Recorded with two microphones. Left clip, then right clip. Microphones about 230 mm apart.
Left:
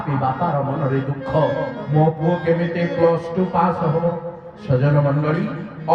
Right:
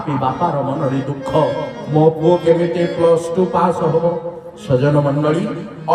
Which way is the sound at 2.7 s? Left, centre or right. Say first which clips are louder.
Right 4 dB; right.